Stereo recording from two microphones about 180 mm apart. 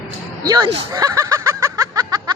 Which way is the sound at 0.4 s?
20° right (ahead or behind).